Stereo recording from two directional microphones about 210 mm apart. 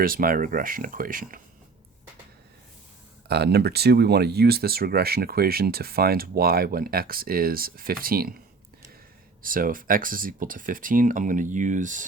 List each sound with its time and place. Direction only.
0.0 s speech: 45° right (ahead or behind)
3.2 s speech: 50° right (ahead or behind)
9.4 s speech: 40° right (ahead or behind)